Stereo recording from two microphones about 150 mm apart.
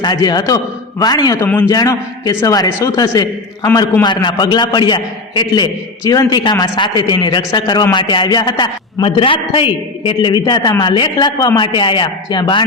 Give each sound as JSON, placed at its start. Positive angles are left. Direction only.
{"t": 0.0, "sound": "a man's voice", "side_deg": 30}
{"t": 1.4, "sound": "a man's voice", "side_deg": 10}
{"t": 1.7, "sound": "a man's voice", "side_deg": 25}